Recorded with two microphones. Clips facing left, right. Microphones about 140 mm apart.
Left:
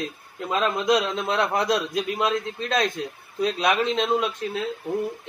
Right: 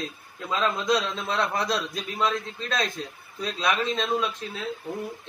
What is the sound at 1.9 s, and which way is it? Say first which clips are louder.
Speech: left 4 dB; 60° left (ahead or behind).